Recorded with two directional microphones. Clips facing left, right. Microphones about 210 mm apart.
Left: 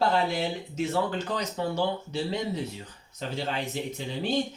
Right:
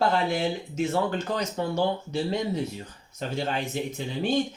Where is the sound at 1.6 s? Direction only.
50° right (ahead or behind).